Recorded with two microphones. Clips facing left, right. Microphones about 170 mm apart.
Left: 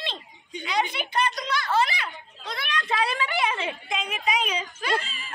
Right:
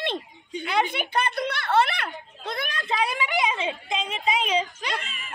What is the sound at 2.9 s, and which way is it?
A woman's voice, 15° right (ahead or behind).